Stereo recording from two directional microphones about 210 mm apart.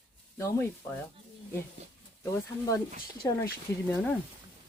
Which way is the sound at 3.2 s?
15° left (ahead or behind).